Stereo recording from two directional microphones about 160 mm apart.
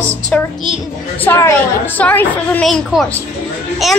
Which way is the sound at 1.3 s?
15° left (ahead or behind).